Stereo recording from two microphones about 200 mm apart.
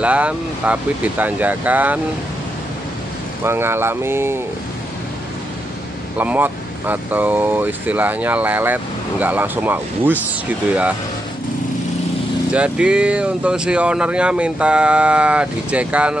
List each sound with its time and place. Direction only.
0.0 s speech: 5° right (ahead or behind)
3.4 s speech: 10° right (ahead or behind)
6.1 s speech: 10° right (ahead or behind)
12.5 s speech: 5° right (ahead or behind)